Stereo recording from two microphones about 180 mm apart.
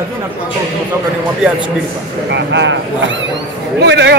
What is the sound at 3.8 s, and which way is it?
Speech, 75° right (ahead or behind).